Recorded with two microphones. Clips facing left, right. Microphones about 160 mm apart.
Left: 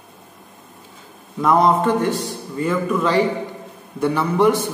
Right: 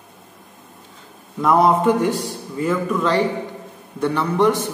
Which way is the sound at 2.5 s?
Centre (ahead or behind).